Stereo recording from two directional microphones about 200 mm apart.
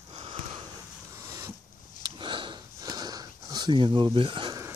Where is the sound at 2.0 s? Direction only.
25° right (ahead or behind).